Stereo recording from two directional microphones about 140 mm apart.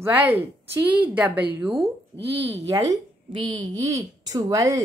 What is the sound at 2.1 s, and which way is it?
Speech, 20° left (ahead or behind).